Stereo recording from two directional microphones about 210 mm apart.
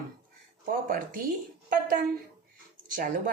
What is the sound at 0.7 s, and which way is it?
Speech, 40° right (ahead or behind).